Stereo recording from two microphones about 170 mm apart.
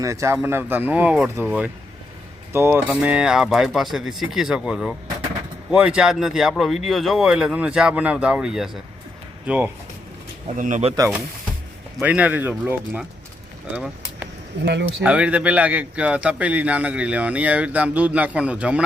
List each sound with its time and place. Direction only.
0.0 s a man's voice: 15° right (ahead or behind)
10.6 s speech: 45° right (ahead or behind)
11.9 s a man's voice: 10° right (ahead or behind)
13.7 s vehicle: 10° right (ahead or behind)
14.6 s speech: 90° right
15.0 s a man's voice: 5° right (ahead or behind)